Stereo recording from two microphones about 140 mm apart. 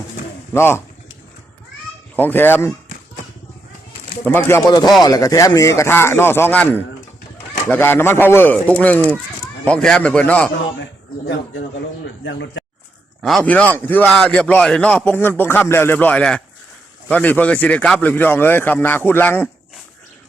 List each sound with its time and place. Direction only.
0.5 s a man's voice: 15° left (ahead or behind)
2.1 s a man's voice: 15° left (ahead or behind)
4.3 s a man's voice: 15° left (ahead or behind)
4.6 s a man's voice: 30° left (ahead or behind); by 10.5 s 10° left (ahead or behind)
13.2 s a man's voice: 5° left (ahead or behind)